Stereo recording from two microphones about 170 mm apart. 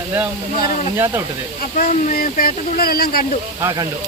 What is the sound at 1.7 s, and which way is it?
Speech, 55° left (ahead or behind).